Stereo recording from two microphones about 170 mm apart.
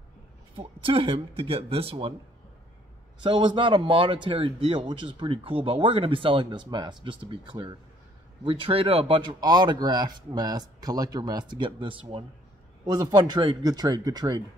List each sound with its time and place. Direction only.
0.6 s speech: 30° right (ahead or behind)
3.2 s speech: 30° right (ahead or behind)